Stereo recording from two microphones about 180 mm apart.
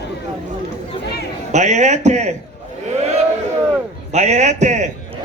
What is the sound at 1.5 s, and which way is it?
Speech, 40° right (ahead or behind).